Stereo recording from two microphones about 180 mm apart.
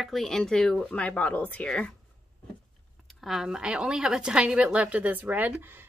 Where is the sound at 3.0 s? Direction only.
Centre (ahead or behind).